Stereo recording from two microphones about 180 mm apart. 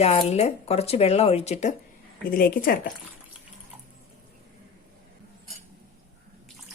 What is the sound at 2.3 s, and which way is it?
Speech, 55° left (ahead or behind).